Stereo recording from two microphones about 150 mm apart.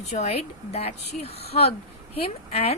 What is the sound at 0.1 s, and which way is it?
A woman's voice, 45° left (ahead or behind).